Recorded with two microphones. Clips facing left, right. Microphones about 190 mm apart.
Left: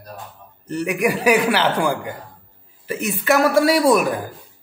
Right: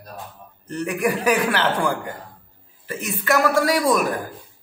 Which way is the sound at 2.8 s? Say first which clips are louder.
Left 4 dB; 15° left (ahead or behind).